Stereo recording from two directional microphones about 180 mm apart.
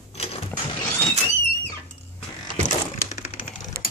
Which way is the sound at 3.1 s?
35° left (ahead or behind).